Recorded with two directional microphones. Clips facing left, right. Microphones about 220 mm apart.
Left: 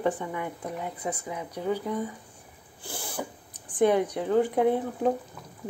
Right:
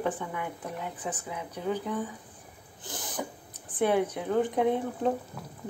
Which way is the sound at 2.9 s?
10° left (ahead or behind).